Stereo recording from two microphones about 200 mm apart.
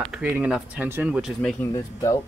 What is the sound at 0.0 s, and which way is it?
Speech, 5° right (ahead or behind).